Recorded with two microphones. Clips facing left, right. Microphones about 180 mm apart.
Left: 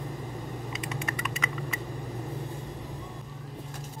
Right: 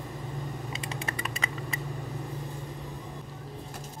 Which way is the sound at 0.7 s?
30° right (ahead or behind).